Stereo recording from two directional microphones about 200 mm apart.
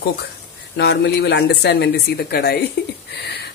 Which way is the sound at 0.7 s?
55° left (ahead or behind).